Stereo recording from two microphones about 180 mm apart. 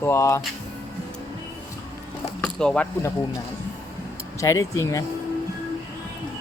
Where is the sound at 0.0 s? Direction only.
15° left (ahead or behind).